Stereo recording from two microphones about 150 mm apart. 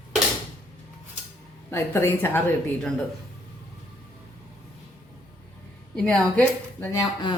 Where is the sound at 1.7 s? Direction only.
15° left (ahead or behind).